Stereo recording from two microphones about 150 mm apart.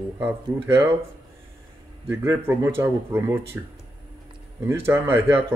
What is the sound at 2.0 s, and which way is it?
Speech, 15° right (ahead or behind).